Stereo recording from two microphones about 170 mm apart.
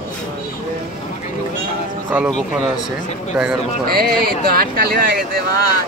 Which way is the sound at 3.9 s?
65° right (ahead or behind).